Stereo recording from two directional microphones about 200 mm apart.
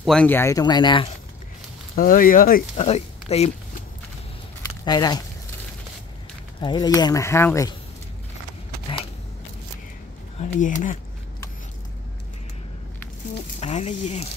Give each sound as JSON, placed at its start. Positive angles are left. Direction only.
{"t": 0.0, "sound": "speech", "side_deg": 5}
{"t": 2.0, "sound": "speech", "side_deg": 45}
{"t": 2.8, "sound": "speech", "side_deg": 30}
{"t": 4.8, "sound": "speech", "side_deg": 20}
{"t": 6.6, "sound": "speech", "side_deg": 20}
{"t": 10.4, "sound": "speech", "side_deg": 40}
{"t": 13.6, "sound": "speech", "side_deg": 35}